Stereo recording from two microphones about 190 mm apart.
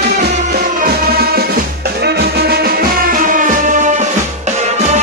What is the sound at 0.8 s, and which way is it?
Music, 55° right (ahead or behind).